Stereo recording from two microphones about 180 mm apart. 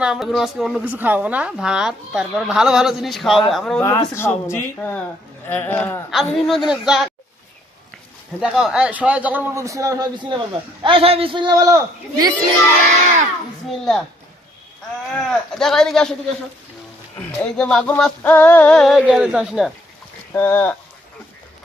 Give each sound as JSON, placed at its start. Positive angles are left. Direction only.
{"t": 0.0, "sound": "a woman's voice", "side_deg": -5}
{"t": 3.8, "sound": "speech", "side_deg": 15}
{"t": 6.1, "sound": "a woman's voice", "side_deg": 0}
{"t": 8.4, "sound": "a man's voice", "side_deg": -5}
{"t": 13.7, "sound": "a woman's voice", "side_deg": 0}
{"t": 15.1, "sound": "a woman's voice", "side_deg": 0}
{"t": 17.4, "sound": "a woman's voice", "side_deg": 5}
{"t": 20.3, "sound": "speech", "side_deg": 10}